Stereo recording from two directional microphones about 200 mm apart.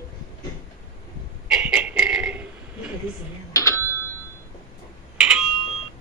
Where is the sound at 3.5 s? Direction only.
15° left (ahead or behind).